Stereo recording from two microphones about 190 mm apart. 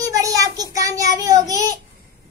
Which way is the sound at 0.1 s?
20° right (ahead or behind).